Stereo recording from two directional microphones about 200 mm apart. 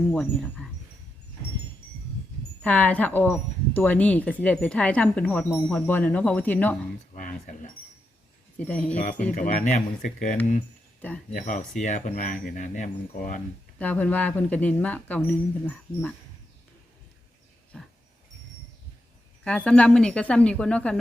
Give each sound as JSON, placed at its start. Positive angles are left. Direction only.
{"t": 0.1, "sound": "speech", "side_deg": 5}
{"t": 2.6, "sound": "speech", "side_deg": 5}
{"t": 7.1, "sound": "speech", "side_deg": 40}
{"t": 8.5, "sound": "speech", "side_deg": 5}
{"t": 9.0, "sound": "speech", "side_deg": 40}
{"t": 13.7, "sound": "speech", "side_deg": 5}
{"t": 17.7, "sound": "dog", "side_deg": 0}
{"t": 19.5, "sound": "speech", "side_deg": 5}